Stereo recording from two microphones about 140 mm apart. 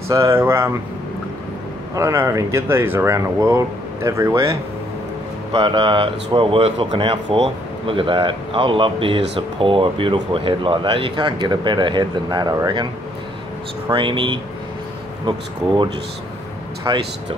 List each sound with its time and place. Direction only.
0.1 s speech: 20° right (ahead or behind)
2.0 s speech: 20° right (ahead or behind)
5.5 s speech: 35° right (ahead or behind)
13.9 s speech: 35° right (ahead or behind)